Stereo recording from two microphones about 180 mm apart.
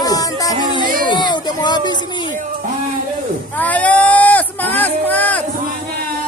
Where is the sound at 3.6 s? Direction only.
10° left (ahead or behind).